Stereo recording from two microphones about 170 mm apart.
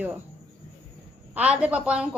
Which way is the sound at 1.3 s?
10° right (ahead or behind).